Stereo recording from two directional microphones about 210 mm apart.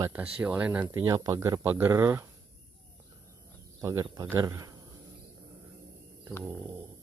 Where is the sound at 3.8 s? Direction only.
15° right (ahead or behind).